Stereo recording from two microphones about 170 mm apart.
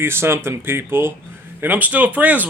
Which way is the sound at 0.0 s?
15° right (ahead or behind).